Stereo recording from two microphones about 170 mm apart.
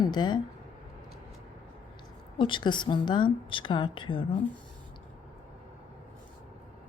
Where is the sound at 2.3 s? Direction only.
30° left (ahead or behind).